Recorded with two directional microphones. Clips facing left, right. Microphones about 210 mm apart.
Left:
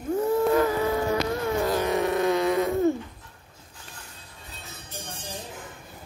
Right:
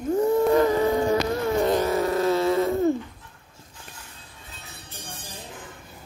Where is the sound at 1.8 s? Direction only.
20° left (ahead or behind).